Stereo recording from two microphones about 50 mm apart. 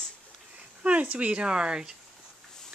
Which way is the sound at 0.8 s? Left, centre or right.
Right.